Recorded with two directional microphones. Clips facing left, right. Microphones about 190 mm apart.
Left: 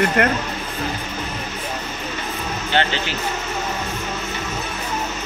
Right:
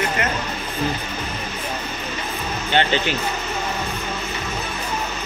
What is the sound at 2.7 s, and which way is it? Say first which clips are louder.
Speech: right 2 dB; 20° right (ahead or behind).